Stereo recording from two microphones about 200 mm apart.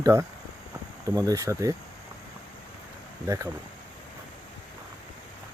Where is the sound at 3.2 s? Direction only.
15° right (ahead or behind).